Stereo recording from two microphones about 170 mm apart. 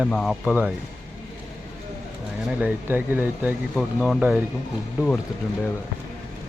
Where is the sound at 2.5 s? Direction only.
10° right (ahead or behind).